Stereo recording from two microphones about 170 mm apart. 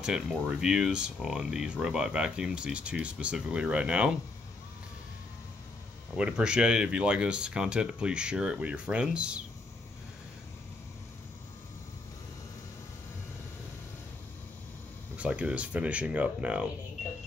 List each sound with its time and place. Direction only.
0.0 s speech: 5° right (ahead or behind)
6.1 s speech: 5° right (ahead or behind)
15.1 s speech: 5° right (ahead or behind)